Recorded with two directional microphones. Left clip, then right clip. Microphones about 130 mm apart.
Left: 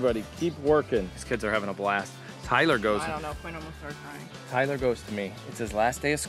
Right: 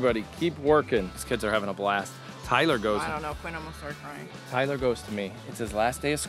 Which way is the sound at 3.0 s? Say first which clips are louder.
Right 1 dB; 55° right (ahead or behind).